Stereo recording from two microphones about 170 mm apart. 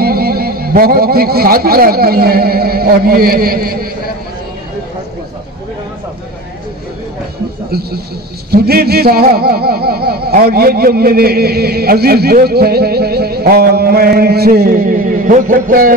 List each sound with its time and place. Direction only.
0.0 s a man's voice: 65° right (ahead or behind)
7.7 s speech: 65° right (ahead or behind)
8.5 s a sound: 65° right (ahead or behind)